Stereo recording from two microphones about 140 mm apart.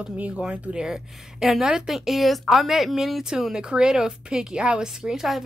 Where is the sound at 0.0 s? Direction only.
5° right (ahead or behind).